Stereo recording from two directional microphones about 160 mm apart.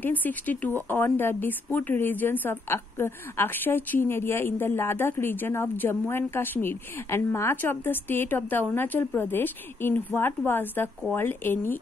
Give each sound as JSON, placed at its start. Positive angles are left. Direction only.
{"t": 0.0, "sound": "speech", "side_deg": 10}